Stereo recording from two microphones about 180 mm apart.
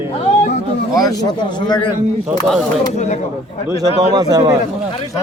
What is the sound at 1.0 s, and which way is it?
Speech, 25° left (ahead or behind).